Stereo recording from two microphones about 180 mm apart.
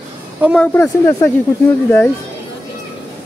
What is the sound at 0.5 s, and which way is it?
Speech, 10° left (ahead or behind).